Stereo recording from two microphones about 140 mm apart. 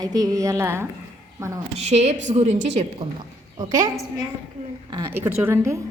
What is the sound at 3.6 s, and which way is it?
A woman's voice, 30° right (ahead or behind).